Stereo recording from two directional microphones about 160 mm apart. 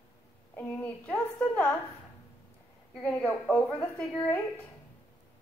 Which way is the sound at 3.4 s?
5° left (ahead or behind).